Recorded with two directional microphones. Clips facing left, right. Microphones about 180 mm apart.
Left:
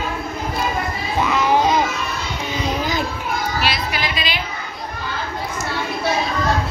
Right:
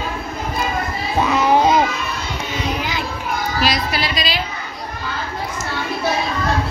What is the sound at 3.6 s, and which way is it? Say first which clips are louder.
Music: right 3 dB; 40° right (ahead or behind).